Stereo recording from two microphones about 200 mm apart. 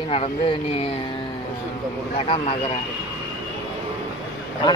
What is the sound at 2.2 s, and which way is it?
Speech, 30° left (ahead or behind).